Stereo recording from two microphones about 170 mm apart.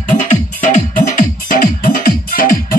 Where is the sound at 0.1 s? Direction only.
50° left (ahead or behind).